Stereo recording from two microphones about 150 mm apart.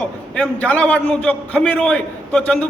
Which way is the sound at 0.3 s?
5° left (ahead or behind).